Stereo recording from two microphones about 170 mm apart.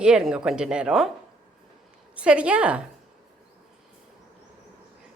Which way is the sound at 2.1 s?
5° right (ahead or behind).